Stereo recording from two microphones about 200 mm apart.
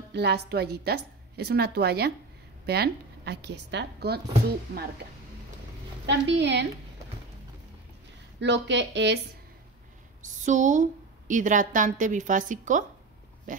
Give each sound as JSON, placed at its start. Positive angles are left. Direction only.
{"t": 0.1, "sound": "a woman's voice", "side_deg": -55}
{"t": 6.0, "sound": "speech", "side_deg": -60}
{"t": 8.4, "sound": "speech", "side_deg": -60}
{"t": 10.4, "sound": "a woman's voice", "side_deg": -40}